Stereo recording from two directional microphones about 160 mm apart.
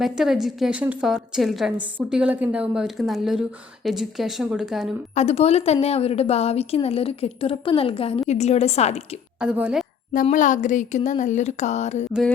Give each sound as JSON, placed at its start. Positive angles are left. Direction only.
{"t": 0.0, "sound": "a woman's voice", "side_deg": 0}
{"t": 5.1, "sound": "a woman's voice", "side_deg": 40}
{"t": 9.4, "sound": "a woman's voice", "side_deg": -5}
{"t": 10.3, "sound": "speech", "side_deg": 50}